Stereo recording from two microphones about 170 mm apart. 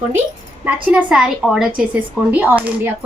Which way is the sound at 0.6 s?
5° right (ahead or behind).